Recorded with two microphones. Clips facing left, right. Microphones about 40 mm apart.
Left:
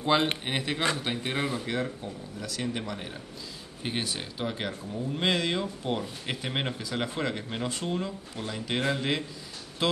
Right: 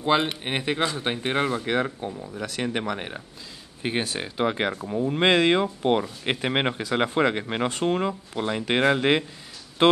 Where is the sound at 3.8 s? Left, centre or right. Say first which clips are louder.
Right 6 dB; right.